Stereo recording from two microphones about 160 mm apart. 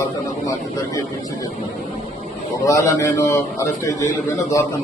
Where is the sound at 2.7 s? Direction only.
20° left (ahead or behind).